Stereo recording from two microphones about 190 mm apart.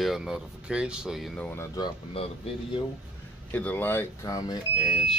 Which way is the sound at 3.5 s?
10° left (ahead or behind).